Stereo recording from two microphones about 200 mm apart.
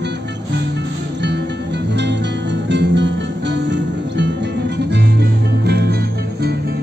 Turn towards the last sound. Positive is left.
turn(degrees=-55)  # may be behind; listen again after turning